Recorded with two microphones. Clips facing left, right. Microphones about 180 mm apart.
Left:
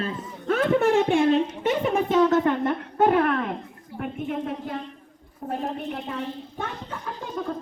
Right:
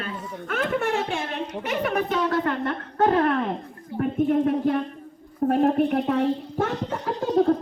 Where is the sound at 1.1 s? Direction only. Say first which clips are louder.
Left 9 dB; 30° left (ahead or behind); by 3.1 s 15° left (ahead or behind).